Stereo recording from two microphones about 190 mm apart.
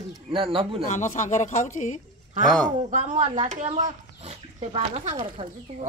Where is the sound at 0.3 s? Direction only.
25° right (ahead or behind).